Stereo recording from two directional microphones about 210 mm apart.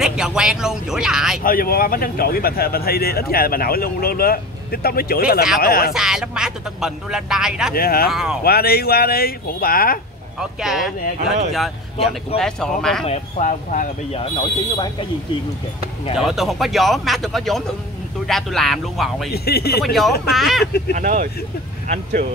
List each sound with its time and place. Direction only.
0.0 s speech: 5° right (ahead or behind)
1.4 s speech: 45° left (ahead or behind)
5.9 s speech: 5° right (ahead or behind)
7.7 s speech: 45° left (ahead or behind)
8.1 s speech: 5° right (ahead or behind)
8.5 s speech: 45° left (ahead or behind)
10.6 s speech: centre (ahead or behind)
13.0 s speech: 35° left (ahead or behind)
14.3 s speech: 20° left (ahead or behind)
16.2 s speech: centre (ahead or behind)
19.3 s speech: 50° left (ahead or behind)
19.8 s speech: centre (ahead or behind)
20.9 s speech: 40° right (ahead or behind)